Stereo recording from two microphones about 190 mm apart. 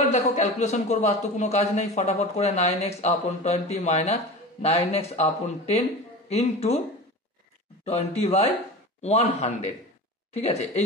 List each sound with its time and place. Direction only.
0.1 s a man's voice: 35° left (ahead or behind)
7.8 s a man's voice: 35° left (ahead or behind)